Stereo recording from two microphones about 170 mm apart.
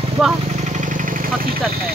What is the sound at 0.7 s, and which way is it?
Vehicle, 50° right (ahead or behind).